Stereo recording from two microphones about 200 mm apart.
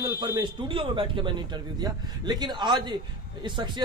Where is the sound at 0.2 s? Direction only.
25° right (ahead or behind).